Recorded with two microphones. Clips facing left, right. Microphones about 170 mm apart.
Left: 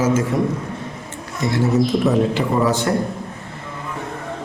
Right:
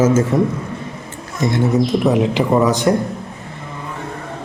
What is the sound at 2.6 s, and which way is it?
Speech, 15° right (ahead or behind).